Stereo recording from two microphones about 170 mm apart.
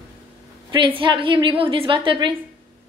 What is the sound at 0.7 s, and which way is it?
A woman's voice, 30° right (ahead or behind).